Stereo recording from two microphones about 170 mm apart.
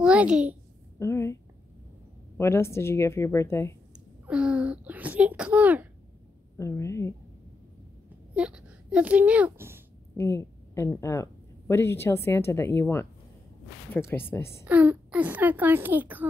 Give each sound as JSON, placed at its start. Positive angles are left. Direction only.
{"t": 0.0, "sound": "a child's voice", "side_deg": -5}
{"t": 0.9, "sound": "a woman's voice", "side_deg": 15}
{"t": 4.3, "sound": "speech", "side_deg": -5}
{"t": 6.6, "sound": "a woman's voice", "side_deg": 15}
{"t": 8.4, "sound": "speech", "side_deg": -5}
{"t": 10.1, "sound": "a sound", "side_deg": 15}
{"t": 11.0, "sound": "a woman's voice", "side_deg": 15}
{"t": 14.6, "sound": "speech", "side_deg": -10}